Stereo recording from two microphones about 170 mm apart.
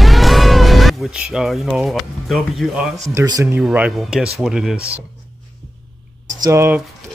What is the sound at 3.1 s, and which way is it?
Speech, 20° right (ahead or behind).